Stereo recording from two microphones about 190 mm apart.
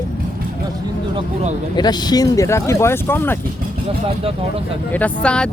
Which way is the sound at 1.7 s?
20° left (ahead or behind).